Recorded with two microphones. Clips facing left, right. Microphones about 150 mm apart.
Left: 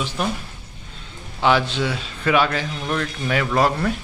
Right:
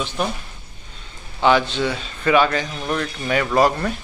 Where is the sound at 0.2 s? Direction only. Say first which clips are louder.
Right 1 dB; centre (ahead or behind).